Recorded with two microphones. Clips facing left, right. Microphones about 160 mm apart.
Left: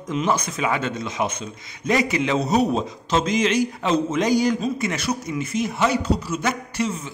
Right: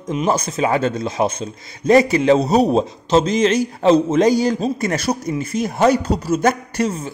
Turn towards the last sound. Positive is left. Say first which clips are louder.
# right 4 dB
turn(degrees=-40)  # may be behind; listen again after turning